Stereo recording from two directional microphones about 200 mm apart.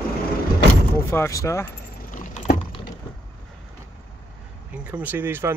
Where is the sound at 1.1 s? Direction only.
15° left (ahead or behind).